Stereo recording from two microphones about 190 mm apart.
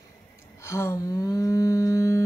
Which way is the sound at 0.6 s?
15° left (ahead or behind).